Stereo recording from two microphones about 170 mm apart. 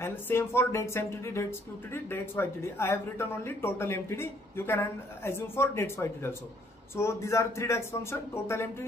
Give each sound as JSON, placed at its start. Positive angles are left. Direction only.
{"t": 0.0, "sound": "speech", "side_deg": 15}